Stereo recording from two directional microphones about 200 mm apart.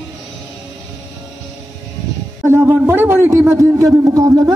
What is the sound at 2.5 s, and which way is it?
A man's voice, 10° right (ahead or behind).